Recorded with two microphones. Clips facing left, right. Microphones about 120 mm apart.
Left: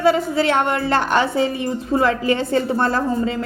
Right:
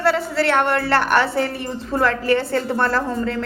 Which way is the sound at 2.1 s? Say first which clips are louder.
Even; 60° right (ahead or behind).